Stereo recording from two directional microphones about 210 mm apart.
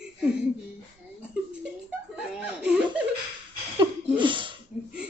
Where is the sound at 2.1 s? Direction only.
5° right (ahead or behind).